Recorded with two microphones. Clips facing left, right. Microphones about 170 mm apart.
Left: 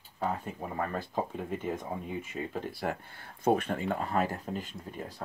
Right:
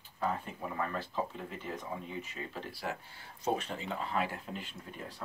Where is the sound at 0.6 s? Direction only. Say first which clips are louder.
Left 2 dB; 45° left (ahead or behind).